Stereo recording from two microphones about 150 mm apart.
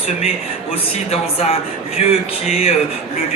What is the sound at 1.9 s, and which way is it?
Speech, 40° left (ahead or behind).